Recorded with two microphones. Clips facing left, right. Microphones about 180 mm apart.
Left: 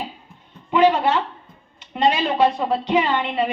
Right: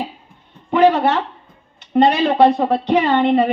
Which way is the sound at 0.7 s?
40° right (ahead or behind).